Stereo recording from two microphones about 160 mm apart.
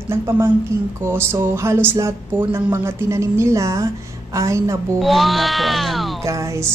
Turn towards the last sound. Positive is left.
turn(degrees=-20)  # may be behind; listen again after turning